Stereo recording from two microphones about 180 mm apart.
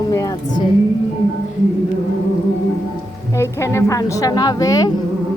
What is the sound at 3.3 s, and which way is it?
A woman's voice, 15° left (ahead or behind).